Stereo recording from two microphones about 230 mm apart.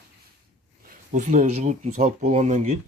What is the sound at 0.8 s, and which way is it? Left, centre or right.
Speech, right.